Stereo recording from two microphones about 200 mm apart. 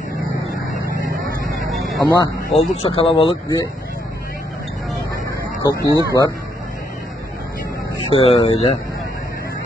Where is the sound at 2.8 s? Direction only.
30° left (ahead or behind).